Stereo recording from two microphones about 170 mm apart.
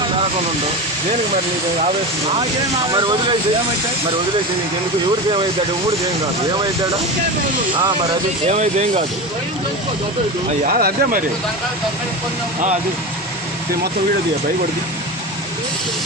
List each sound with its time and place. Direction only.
2.9 s speech: 30° right (ahead or behind)
7.8 s speech: 25° right (ahead or behind)
8.4 s speech: 40° right (ahead or behind)
10.6 s speech: 55° right (ahead or behind)